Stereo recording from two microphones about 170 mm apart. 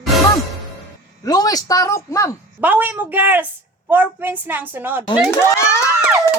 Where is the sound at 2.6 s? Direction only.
10° right (ahead or behind).